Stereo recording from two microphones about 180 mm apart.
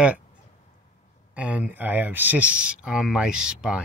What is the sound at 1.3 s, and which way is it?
Speech, 5° right (ahead or behind).